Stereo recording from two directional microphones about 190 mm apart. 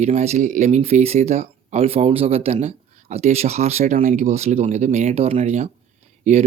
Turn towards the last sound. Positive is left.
turn(degrees=-40)  # may be behind; listen again after turning